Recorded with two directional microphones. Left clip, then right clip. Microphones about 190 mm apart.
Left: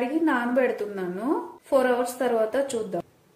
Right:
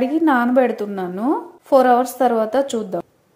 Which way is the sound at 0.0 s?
40° right (ahead or behind).